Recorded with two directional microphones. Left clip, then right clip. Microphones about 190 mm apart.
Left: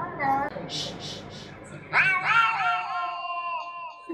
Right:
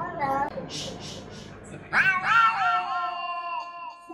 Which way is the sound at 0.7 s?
5° left (ahead or behind).